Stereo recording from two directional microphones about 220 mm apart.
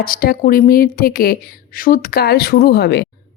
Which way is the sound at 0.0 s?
40° left (ahead or behind).